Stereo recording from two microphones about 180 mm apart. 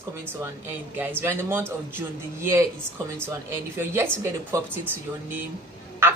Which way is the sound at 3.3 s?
15° right (ahead or behind).